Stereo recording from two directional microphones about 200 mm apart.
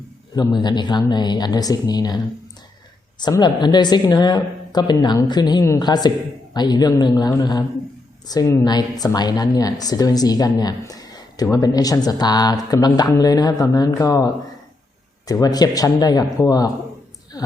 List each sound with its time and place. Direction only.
0.3 s a woman's voice: 20° left (ahead or behind)
15.3 s a woman's voice: 20° left (ahead or behind)